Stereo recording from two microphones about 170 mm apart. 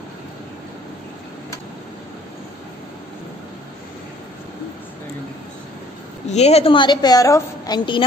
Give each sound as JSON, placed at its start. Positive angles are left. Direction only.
{"t": 6.2, "sound": "a woman's voice", "side_deg": 40}